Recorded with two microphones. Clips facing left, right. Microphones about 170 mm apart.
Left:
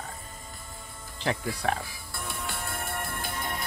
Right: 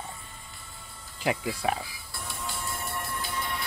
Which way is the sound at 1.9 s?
55° left (ahead or behind).